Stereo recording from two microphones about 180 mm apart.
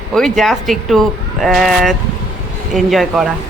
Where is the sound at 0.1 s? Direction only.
Centre (ahead or behind).